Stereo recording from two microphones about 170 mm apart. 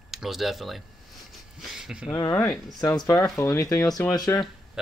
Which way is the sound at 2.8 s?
15° left (ahead or behind).